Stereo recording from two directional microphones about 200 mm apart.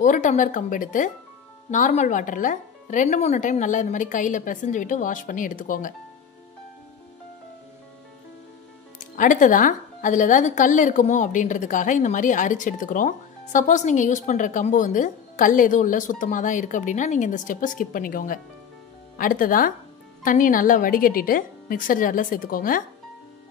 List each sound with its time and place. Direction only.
0.0 s a woman's voice: 40° left (ahead or behind)
9.1 s a woman's voice: 40° left (ahead or behind)